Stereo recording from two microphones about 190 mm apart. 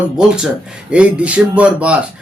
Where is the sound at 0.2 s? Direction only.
5° right (ahead or behind).